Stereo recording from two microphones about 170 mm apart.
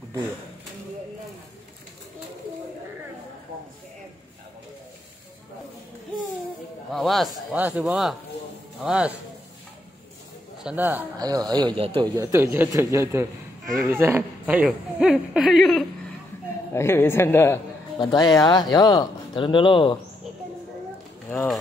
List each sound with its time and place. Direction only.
6.9 s a sound: centre (ahead or behind)
7.5 s a woman's voice: 10° right (ahead or behind)
10.6 s a man's voice: 10° right (ahead or behind)
11.1 s a man's voice: 20° right (ahead or behind); by 15.8 s centre (ahead or behind)
16.7 s a woman's voice: 15° left (ahead or behind)
17.9 s speech: 25° left (ahead or behind)
21.3 s a woman's voice: 10° left (ahead or behind)